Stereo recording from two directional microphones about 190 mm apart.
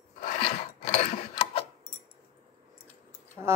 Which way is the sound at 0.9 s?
30° left (ahead or behind).